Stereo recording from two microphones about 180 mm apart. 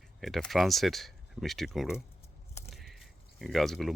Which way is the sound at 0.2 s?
Centre (ahead or behind).